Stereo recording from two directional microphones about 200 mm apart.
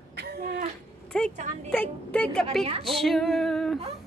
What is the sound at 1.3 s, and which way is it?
Speech, 35° right (ahead or behind).